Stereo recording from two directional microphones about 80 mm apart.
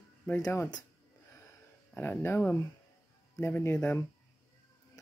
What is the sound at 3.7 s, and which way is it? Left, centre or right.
Speech, left.